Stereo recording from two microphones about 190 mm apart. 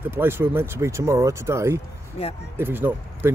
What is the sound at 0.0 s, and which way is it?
Speech, 10° right (ahead or behind).